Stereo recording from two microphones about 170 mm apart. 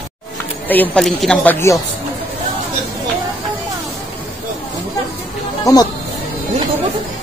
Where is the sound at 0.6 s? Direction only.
5° left (ahead or behind).